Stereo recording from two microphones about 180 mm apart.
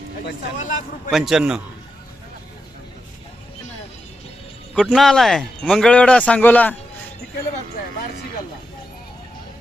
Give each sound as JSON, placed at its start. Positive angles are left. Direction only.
{"t": 0.6, "sound": "a man's voice", "side_deg": 45}
{"t": 1.1, "sound": "speech", "side_deg": 0}
{"t": 4.7, "sound": "speech", "side_deg": 5}